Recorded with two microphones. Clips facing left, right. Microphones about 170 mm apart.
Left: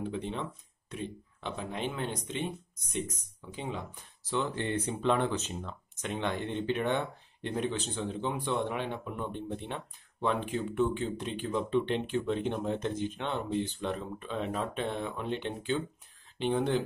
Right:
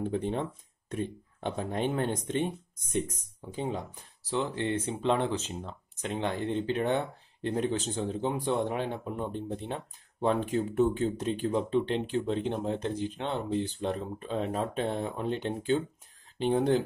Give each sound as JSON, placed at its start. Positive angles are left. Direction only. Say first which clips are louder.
{"t": 0.0, "sound": "speech", "louder": "right 5 dB", "side_deg": -50}